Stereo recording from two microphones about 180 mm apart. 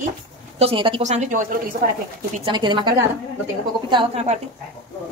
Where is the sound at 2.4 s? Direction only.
25° right (ahead or behind).